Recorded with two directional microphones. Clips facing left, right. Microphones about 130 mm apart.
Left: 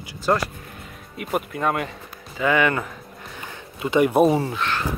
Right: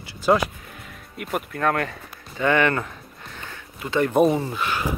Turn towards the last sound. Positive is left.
turn(degrees=-5)  # may be behind; listen again after turning